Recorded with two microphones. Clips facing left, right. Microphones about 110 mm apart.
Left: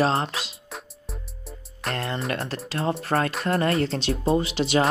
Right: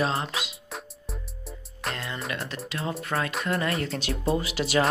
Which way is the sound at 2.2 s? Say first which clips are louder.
Left 4 dB; 30° left (ahead or behind).